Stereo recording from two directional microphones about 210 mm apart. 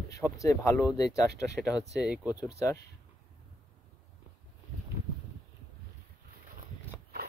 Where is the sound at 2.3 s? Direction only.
15° left (ahead or behind).